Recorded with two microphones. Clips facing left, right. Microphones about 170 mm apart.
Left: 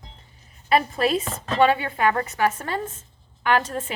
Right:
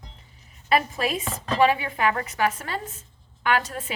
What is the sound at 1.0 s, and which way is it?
Speech, 30° left (ahead or behind).